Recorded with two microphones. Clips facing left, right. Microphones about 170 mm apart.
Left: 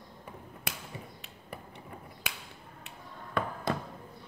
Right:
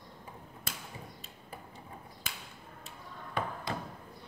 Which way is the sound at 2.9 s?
55° left (ahead or behind).